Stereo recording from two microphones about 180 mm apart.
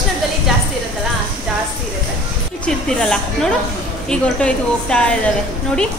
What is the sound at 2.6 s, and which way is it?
A woman's voice, 5° left (ahead or behind).